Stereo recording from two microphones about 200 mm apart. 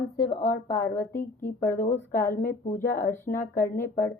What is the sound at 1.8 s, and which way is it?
Speech, 40° left (ahead or behind).